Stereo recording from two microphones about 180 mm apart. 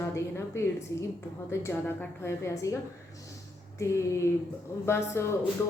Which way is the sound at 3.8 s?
15° left (ahead or behind).